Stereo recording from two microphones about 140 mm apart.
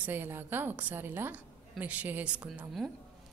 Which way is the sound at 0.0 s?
15° right (ahead or behind).